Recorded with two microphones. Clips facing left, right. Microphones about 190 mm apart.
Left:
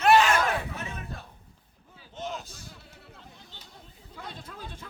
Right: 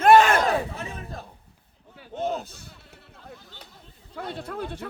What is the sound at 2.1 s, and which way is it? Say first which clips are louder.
Sheep: right 8 dB; 60° right (ahead or behind).